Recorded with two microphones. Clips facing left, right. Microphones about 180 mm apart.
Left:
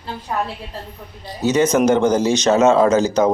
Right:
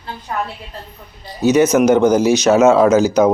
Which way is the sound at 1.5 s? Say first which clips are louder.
Right 3 dB; 10° right (ahead or behind).